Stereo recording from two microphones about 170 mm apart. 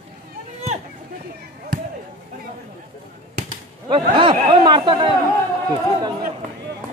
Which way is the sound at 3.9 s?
30° right (ahead or behind).